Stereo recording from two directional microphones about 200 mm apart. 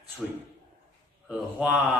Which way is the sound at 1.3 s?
Centre (ahead or behind).